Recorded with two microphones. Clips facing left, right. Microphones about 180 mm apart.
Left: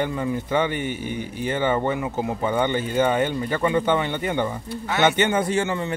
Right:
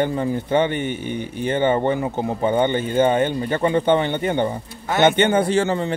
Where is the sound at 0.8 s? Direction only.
10° left (ahead or behind).